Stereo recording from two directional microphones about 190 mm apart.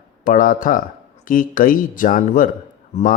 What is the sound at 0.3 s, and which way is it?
A man's voice, 45° left (ahead or behind).